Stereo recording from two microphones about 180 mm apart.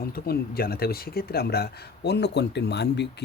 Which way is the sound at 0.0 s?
55° left (ahead or behind).